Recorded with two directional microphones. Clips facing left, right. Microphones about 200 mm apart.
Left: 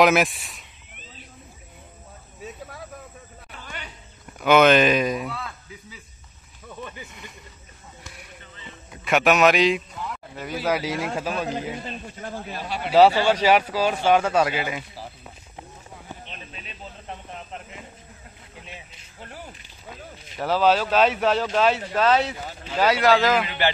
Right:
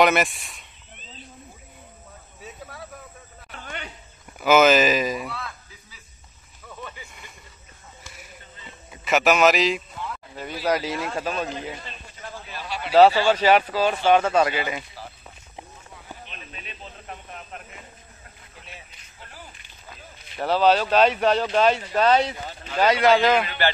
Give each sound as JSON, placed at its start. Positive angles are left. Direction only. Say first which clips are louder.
{"t": 0.0, "sound": "speech", "louder": "left 1 dB", "side_deg": 0}
{"t": 3.6, "sound": "a sound", "louder": "right 3 dB", "side_deg": -55}
{"t": 4.4, "sound": "speech", "louder": "left 1 dB", "side_deg": 0}
{"t": 8.9, "sound": "a man's voice", "louder": "even", "side_deg": 0}
{"t": 11.8, "sound": "a man's voice", "louder": "left 6 dB", "side_deg": 40}
{"t": 12.9, "sound": "speech", "louder": "right 1 dB", "side_deg": 10}
{"t": 17.1, "sound": "speech", "louder": "left 2 dB", "side_deg": 25}
{"t": 20.3, "sound": "speech", "louder": "right 1 dB", "side_deg": 5}
{"t": 23.4, "sound": "speech", "louder": "even", "side_deg": 15}